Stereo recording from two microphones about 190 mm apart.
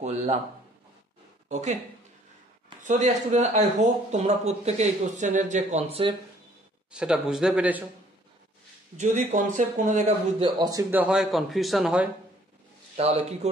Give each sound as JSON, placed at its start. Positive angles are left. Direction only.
{"t": 0.0, "sound": "speech", "side_deg": -35}
{"t": 1.5, "sound": "speech", "side_deg": -40}
{"t": 2.8, "sound": "speech", "side_deg": -40}
{"t": 6.9, "sound": "a man's voice", "side_deg": -5}
{"t": 8.9, "sound": "speech", "side_deg": -40}
{"t": 10.4, "sound": "a man's voice", "side_deg": -20}
{"t": 12.9, "sound": "speech", "side_deg": -35}